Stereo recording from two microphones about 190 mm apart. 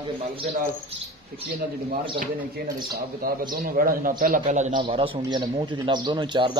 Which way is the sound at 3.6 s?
45° right (ahead or behind).